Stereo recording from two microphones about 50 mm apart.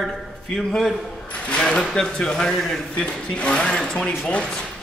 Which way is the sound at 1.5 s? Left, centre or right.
Centre.